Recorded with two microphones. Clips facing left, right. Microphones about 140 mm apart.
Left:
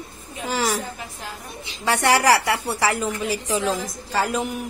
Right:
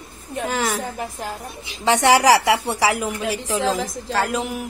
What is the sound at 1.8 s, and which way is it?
A woman's voice, 15° right (ahead or behind).